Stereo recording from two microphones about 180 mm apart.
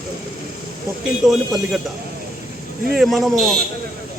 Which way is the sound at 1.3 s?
Centre (ahead or behind).